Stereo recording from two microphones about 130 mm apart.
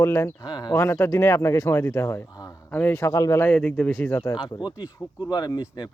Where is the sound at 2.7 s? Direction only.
15° left (ahead or behind).